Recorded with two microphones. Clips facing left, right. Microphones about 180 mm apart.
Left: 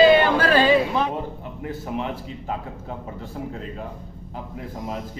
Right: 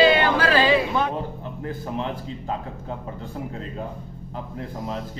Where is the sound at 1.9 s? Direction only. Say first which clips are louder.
Left 1 dB; 5° left (ahead or behind).